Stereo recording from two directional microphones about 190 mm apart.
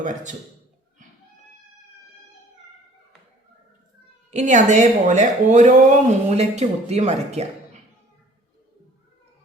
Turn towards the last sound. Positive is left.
turn(degrees=-35)  # may be behind; listen again after turning